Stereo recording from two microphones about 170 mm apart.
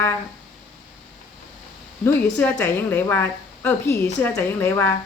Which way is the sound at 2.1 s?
10° left (ahead or behind).